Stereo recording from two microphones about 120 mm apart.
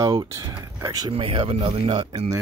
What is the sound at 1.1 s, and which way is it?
Speech, 45° right (ahead or behind).